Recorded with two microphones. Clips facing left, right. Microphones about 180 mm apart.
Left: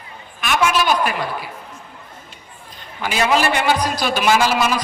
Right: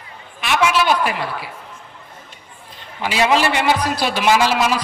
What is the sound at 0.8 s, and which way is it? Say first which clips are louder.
Speech: even; 25° right (ahead or behind).